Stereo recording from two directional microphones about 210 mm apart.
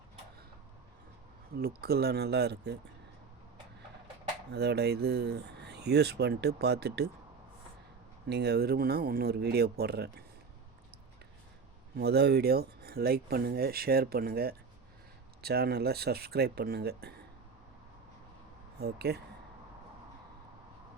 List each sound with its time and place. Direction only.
1.5 s speech: 45° right (ahead or behind)
4.5 s speech: 50° right (ahead or behind)
8.3 s speech: 50° right (ahead or behind)
11.9 s speech: 50° right (ahead or behind)
18.8 s speech: 50° right (ahead or behind)